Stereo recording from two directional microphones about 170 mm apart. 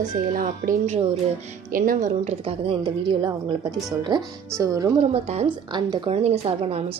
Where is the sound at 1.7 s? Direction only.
55° right (ahead or behind).